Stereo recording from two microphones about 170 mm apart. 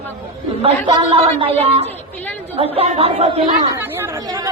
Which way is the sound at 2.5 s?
35° right (ahead or behind).